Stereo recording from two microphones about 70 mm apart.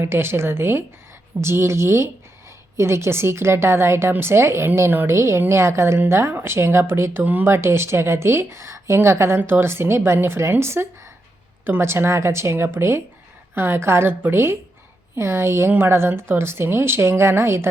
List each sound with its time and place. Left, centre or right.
0.0 s a woman's voice: right
7.2 s speech: right
7.4 s speech: right